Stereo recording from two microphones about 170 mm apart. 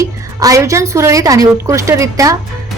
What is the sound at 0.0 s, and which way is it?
A woman's voice, 20° right (ahead or behind).